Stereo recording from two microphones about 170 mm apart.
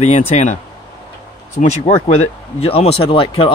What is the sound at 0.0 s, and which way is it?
Speech, 40° left (ahead or behind).